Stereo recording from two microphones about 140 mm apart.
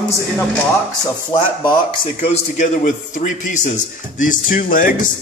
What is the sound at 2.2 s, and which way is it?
A man's voice, 55° left (ahead or behind).